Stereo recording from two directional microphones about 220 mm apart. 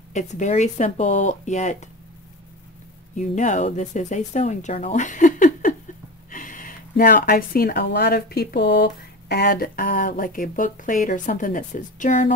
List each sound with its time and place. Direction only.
0.1 s speech: 35° left (ahead or behind)
3.2 s speech: 35° left (ahead or behind)